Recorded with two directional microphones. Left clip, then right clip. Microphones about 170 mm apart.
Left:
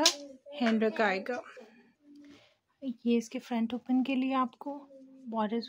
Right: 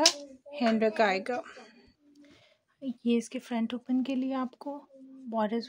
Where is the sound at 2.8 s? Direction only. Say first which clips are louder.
Right 1 dB; 5° right (ahead or behind).